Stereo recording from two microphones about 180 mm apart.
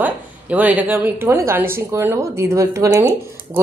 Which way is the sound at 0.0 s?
10° right (ahead or behind).